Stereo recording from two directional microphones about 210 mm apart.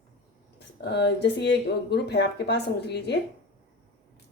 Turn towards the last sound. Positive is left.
turn(degrees=55)  # may be behind; listen again after turning